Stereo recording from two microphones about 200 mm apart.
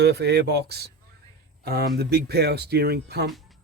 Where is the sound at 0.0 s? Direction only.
55° right (ahead or behind).